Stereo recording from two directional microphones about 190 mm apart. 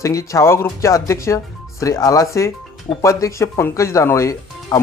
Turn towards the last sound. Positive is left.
turn(degrees=15)  # may be behind; listen again after turning